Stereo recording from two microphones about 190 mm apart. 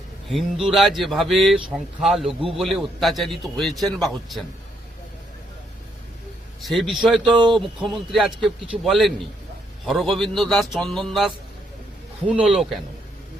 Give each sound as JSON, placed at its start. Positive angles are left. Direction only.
{"t": 0.3, "sound": "speech", "side_deg": 0}
{"t": 6.6, "sound": "speech", "side_deg": 0}
{"t": 7.3, "sound": "speech", "side_deg": -25}
{"t": 7.5, "sound": "speech", "side_deg": 0}
{"t": 12.3, "sound": "speech", "side_deg": -5}